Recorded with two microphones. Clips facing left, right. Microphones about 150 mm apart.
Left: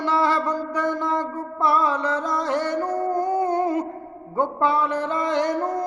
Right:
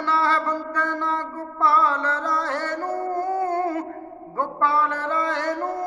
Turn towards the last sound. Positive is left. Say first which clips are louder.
# left 2 dB
turn(degrees=15)  # may be behind; listen again after turning